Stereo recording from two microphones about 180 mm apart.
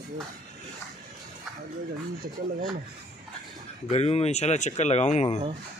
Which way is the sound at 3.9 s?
35° left (ahead or behind).